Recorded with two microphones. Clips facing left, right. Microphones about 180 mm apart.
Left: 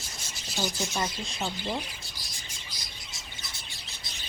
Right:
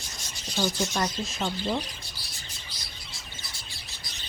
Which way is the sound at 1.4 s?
10° left (ahead or behind).